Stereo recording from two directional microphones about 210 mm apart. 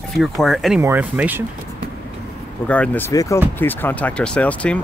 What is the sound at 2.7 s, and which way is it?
Speech, 10° left (ahead or behind).